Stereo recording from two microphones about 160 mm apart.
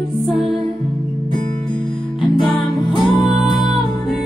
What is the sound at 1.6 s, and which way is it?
Music, 30° left (ahead or behind).